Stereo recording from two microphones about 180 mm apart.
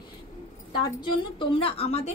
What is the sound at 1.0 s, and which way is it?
A woman's voice, 30° left (ahead or behind).